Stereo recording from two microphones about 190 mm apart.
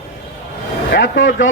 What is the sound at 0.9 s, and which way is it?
Speech, 70° left (ahead or behind).